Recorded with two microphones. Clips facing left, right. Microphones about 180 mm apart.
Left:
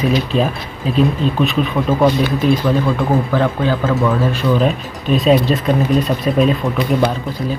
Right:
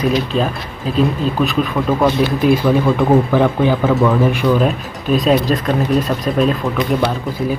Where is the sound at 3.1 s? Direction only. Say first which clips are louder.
Right 3 dB; 15° right (ahead or behind).